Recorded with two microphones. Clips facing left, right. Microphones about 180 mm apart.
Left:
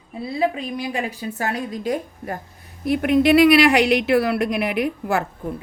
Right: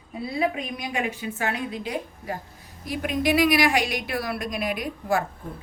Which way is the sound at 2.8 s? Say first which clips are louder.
Left 8 dB; 60° left (ahead or behind).